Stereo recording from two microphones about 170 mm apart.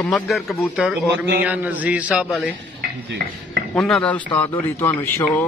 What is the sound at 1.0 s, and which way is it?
Speech, 90° right.